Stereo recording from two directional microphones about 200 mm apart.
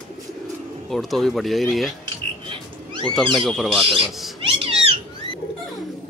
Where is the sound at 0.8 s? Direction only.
Centre (ahead or behind).